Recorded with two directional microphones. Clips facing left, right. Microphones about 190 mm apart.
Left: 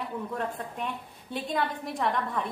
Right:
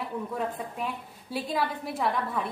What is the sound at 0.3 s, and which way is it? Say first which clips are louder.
A woman's voice: right 1 dB; 5° right (ahead or behind).